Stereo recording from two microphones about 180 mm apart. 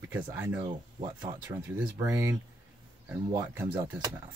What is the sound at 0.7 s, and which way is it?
Speech, 25° right (ahead or behind).